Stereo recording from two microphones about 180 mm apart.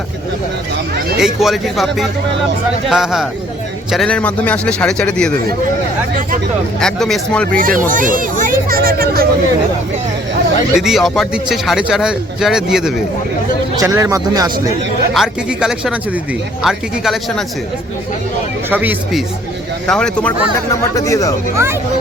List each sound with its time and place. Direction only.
1.2 s a man's voice: centre (ahead or behind)
6.7 s speech: 5° left (ahead or behind)
7.5 s speech: 50° right (ahead or behind)
10.8 s speech: centre (ahead or behind)
13.7 s speech: 15° right (ahead or behind)
15.1 s speech: centre (ahead or behind)
18.7 s speech: 10° right (ahead or behind)
19.9 s speech: 5° left (ahead or behind)
20.7 s speech: 15° left (ahead or behind)
21.5 s speech: 15° right (ahead or behind)